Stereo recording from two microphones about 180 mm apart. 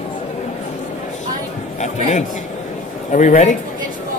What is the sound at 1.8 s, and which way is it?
A man's voice, 40° left (ahead or behind).